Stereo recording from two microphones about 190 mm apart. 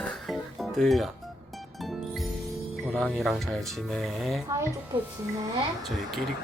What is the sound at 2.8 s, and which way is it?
Speech, 5° left (ahead or behind).